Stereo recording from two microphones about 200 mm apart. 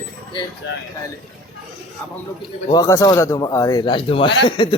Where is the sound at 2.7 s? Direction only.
15° left (ahead or behind).